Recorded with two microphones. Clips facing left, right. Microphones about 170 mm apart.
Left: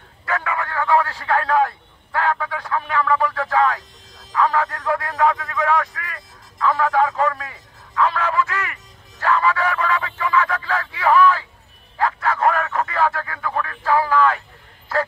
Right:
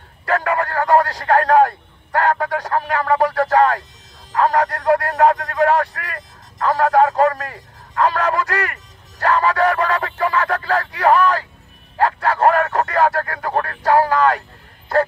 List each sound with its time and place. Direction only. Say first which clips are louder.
0.2 s a sound: right 5 dB; 40° right (ahead or behind)
4.3 s speech: right 2 dB; 40° right (ahead or behind)
4.6 s speech: right 4 dB; 70° right (ahead or behind)
5.2 s speech: right 3 dB; 45° right (ahead or behind)
6.6 s a sound: right 4 dB; 40° right (ahead or behind)
12.0 s bow-wow: right 4 dB; 35° right (ahead or behind)
12.9 s speech: right 4 dB; 40° right (ahead or behind)
13.8 s speech: right 4 dB; 75° right (ahead or behind)
14.1 s a sound: right 2 dB; 40° right (ahead or behind)